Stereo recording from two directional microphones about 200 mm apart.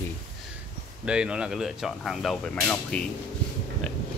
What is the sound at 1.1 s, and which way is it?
Speech, 5° right (ahead or behind).